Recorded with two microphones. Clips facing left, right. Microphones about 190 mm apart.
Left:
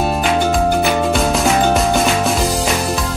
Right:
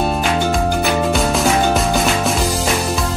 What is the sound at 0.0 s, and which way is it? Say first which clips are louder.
Music: left 1 dB; centre (ahead or behind).